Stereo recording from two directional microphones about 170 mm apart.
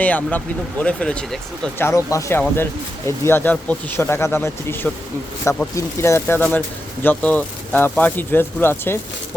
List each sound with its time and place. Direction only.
0.0 s speech: 10° left (ahead or behind)
1.8 s speech: 15° left (ahead or behind)